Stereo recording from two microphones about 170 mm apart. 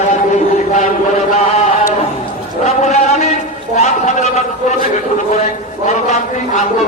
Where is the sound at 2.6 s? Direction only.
40° left (ahead or behind).